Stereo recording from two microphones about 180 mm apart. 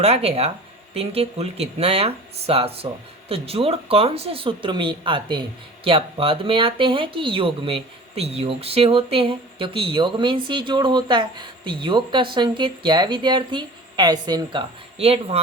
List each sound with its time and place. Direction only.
0.0 s speech: 35° right (ahead or behind)